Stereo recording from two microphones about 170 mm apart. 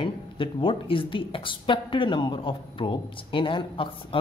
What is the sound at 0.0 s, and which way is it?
A woman's voice, 30° left (ahead or behind).